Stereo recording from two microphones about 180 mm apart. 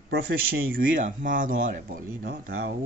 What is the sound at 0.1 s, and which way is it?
Speech, 60° right (ahead or behind).